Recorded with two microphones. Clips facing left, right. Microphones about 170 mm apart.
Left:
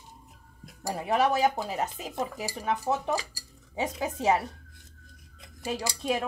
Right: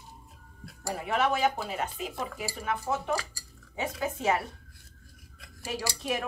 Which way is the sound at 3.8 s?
20° left (ahead or behind).